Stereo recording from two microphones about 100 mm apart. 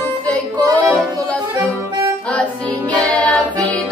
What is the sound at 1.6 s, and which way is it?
Accordion, 35° right (ahead or behind).